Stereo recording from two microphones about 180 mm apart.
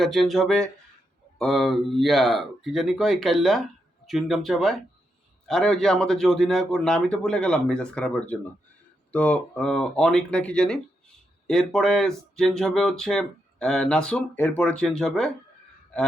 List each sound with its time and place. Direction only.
0.0 s speech: centre (ahead or behind)